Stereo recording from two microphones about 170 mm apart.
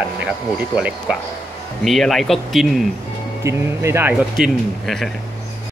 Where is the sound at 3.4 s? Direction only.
15° right (ahead or behind).